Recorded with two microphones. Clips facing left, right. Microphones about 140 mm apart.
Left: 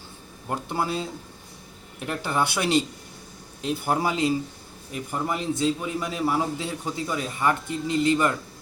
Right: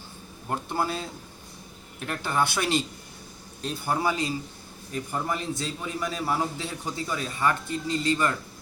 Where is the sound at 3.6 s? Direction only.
15° left (ahead or behind).